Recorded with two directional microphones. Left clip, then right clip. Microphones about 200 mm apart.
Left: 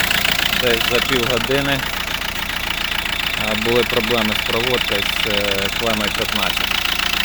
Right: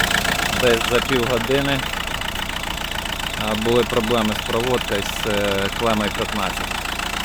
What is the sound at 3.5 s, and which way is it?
Speech, centre (ahead or behind).